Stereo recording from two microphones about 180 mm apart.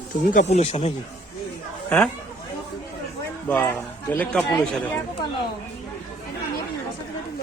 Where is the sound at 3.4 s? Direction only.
10° left (ahead or behind).